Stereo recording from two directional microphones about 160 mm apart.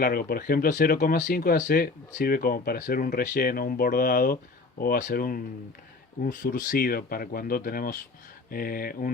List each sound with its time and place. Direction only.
0.0 s speech: 70° left (ahead or behind)